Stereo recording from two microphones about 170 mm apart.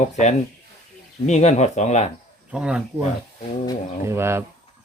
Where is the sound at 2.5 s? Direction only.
5° right (ahead or behind).